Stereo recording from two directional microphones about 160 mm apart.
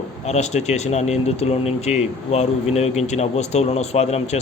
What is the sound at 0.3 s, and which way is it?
Speech, 45° left (ahead or behind).